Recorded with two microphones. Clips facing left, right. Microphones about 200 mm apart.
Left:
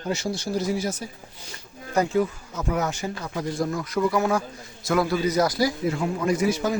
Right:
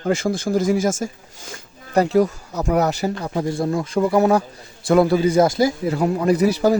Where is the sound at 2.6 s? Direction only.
40° right (ahead or behind).